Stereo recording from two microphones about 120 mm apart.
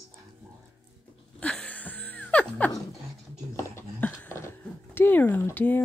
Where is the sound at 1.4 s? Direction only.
10° left (ahead or behind).